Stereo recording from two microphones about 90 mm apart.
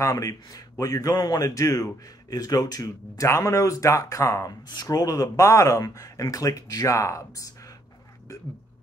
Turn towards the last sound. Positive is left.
turn(degrees=35)  # may be behind; listen again after turning